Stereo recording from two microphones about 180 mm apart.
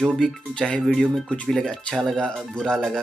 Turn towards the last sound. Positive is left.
turn(degrees=0)  # may be behind; listen again after turning